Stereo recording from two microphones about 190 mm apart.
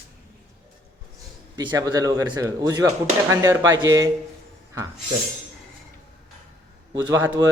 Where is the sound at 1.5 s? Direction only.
20° right (ahead or behind).